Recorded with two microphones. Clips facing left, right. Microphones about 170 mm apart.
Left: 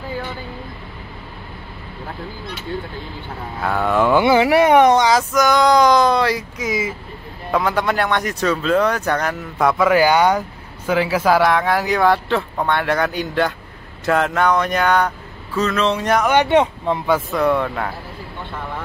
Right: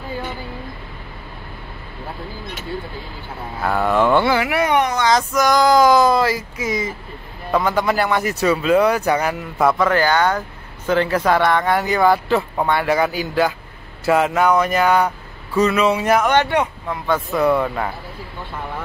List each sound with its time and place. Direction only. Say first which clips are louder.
3.6 s speech: even; centre (ahead or behind)
4.2 s speech: left 4 dB; 15° left (ahead or behind)
4.5 s speech: left 6 dB; 35° left (ahead or behind)
5.1 s speech: even; centre (ahead or behind)
9.8 s speech: left 3 dB; 10° left (ahead or behind); by 16.3 s 5° right (ahead or behind)
16.4 s speech: left 5 dB; 25° left (ahead or behind)
17.3 s speech: right 1 dB; 5° right (ahead or behind)